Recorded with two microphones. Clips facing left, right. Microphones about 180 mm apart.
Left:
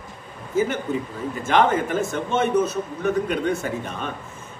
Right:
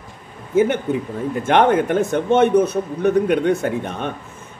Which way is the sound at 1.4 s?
65° right (ahead or behind).